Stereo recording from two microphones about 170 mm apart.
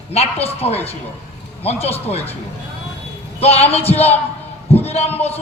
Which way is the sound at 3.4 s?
35° left (ahead or behind).